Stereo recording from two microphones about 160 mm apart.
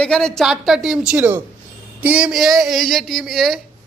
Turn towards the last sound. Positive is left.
turn(degrees=0)  # may be behind; listen again after turning